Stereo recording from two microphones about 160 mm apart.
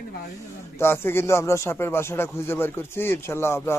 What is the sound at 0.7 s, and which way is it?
Speech, 15° left (ahead or behind).